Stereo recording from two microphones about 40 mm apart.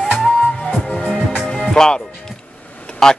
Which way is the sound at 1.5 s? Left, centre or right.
Centre.